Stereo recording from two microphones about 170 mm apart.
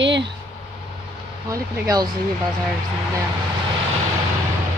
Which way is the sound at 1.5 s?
20° right (ahead or behind).